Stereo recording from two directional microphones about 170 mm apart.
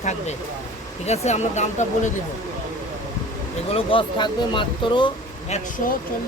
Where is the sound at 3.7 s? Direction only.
30° left (ahead or behind).